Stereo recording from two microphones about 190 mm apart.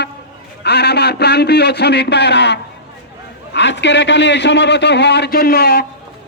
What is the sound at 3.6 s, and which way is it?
A man's voice, 65° left (ahead or behind).